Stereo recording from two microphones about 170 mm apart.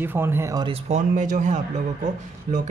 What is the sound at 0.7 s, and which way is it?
Speech, 45° right (ahead or behind).